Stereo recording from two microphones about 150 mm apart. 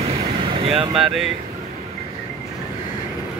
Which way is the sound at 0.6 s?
40° right (ahead or behind).